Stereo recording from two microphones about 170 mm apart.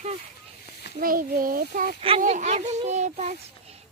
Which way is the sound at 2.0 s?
35° right (ahead or behind).